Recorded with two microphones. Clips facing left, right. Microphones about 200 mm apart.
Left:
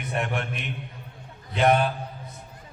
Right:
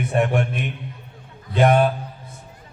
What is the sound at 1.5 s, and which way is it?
Speech, 50° right (ahead or behind).